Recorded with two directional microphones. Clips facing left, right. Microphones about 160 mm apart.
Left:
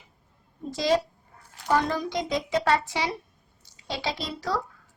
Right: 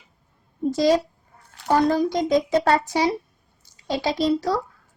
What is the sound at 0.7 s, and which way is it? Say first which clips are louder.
A child's voice: right 5 dB; 40° right (ahead or behind).